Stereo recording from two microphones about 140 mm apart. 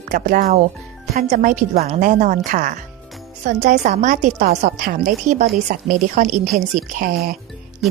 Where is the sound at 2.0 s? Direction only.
65° right (ahead or behind).